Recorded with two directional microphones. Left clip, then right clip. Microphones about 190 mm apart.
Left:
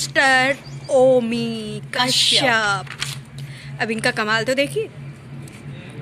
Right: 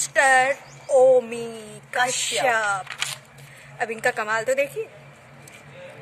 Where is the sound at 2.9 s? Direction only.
50° right (ahead or behind).